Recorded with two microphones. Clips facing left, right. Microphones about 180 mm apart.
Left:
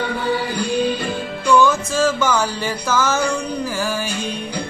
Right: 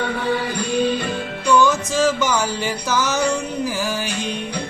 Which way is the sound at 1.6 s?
15° right (ahead or behind).